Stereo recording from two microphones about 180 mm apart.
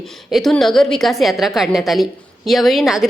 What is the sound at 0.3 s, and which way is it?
A woman's voice, centre (ahead or behind).